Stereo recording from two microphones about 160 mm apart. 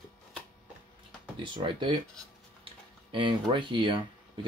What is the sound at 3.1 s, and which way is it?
Speech, 30° right (ahead or behind).